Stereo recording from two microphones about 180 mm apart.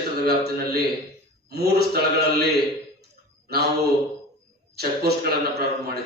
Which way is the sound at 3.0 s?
60° right (ahead or behind).